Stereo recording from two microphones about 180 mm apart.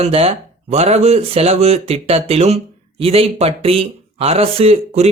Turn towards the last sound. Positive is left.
turn(degrees=-35)  # may be behind; listen again after turning